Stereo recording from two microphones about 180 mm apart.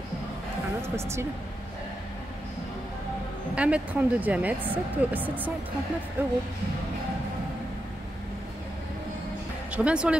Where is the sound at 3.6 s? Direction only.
5° right (ahead or behind).